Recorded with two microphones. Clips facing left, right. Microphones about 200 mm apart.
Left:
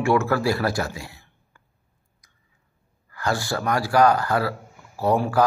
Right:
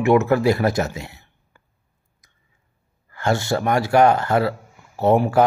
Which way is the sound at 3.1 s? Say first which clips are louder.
Right 5 dB; 25° right (ahead or behind).